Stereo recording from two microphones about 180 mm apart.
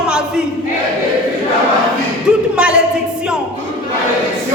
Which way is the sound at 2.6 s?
5° right (ahead or behind).